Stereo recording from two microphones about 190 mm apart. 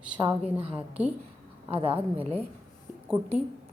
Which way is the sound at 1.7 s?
30° right (ahead or behind).